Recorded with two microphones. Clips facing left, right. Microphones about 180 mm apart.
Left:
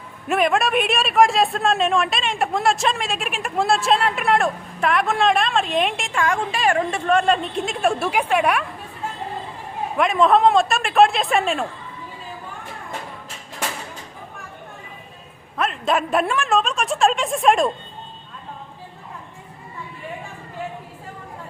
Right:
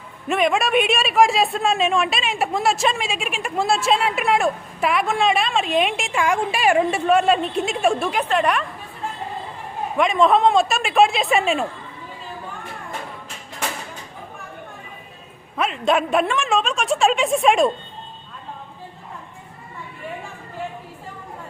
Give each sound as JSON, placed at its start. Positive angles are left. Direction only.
{"t": 0.3, "sound": "speech", "side_deg": 0}
{"t": 10.0, "sound": "speech", "side_deg": 0}
{"t": 15.5, "sound": "speech", "side_deg": 0}